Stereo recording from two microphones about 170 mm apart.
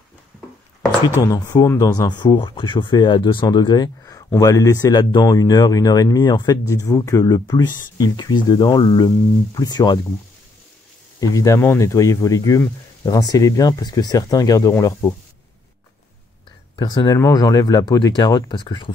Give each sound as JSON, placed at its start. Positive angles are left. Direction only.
{"t": 1.2, "sound": "speech", "side_deg": 20}
{"t": 11.1, "sound": "speech", "side_deg": 20}
{"t": 16.7, "sound": "speech", "side_deg": 25}